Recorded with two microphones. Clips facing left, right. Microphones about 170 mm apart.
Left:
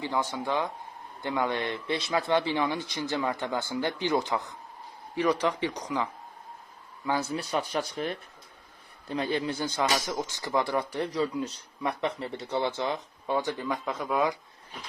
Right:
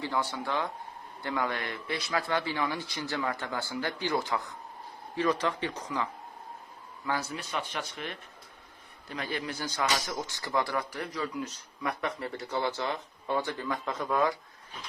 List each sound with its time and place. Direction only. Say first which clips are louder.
0.0 s speech: left 2 dB; 20° left (ahead or behind)
7.3 s speech: left 6 dB; 35° left (ahead or behind)
9.0 s speech: left 6 dB; 25° left (ahead or behind)